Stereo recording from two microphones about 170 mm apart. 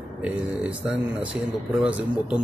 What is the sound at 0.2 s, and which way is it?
Speech, 5° right (ahead or behind).